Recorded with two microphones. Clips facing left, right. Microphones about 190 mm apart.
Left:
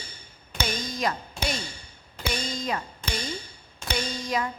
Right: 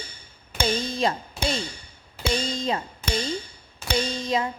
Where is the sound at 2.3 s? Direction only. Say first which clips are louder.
Right 4 dB; 25° right (ahead or behind).